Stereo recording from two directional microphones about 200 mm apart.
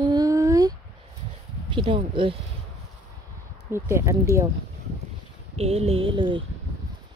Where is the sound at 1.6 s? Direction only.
25° right (ahead or behind).